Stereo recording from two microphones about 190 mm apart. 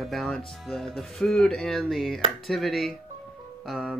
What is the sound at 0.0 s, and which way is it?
Music, centre (ahead or behind).